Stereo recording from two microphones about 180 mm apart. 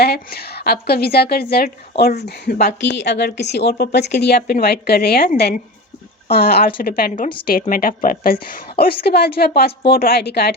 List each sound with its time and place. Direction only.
0.0 s a woman's voice: 60° left (ahead or behind)